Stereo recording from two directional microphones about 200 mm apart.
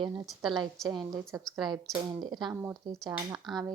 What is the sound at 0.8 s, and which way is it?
Speech, centre (ahead or behind).